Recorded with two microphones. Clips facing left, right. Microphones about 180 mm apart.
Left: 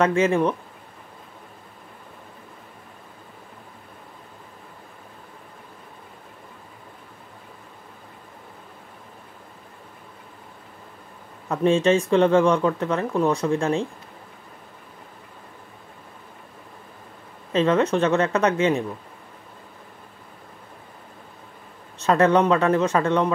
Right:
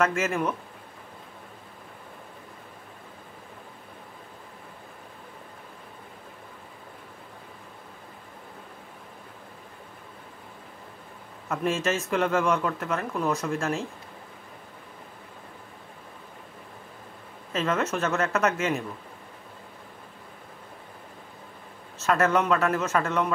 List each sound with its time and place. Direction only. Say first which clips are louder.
0.0 s speech: left 6 dB; 30° left (ahead or behind)
11.4 s speech: left 8 dB; 30° left (ahead or behind)
17.5 s speech: left 7 dB; 35° left (ahead or behind)
22.0 s speech: left 5 dB; 30° left (ahead or behind)